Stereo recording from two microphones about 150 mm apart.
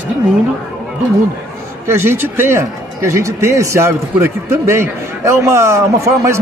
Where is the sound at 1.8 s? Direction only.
15° right (ahead or behind).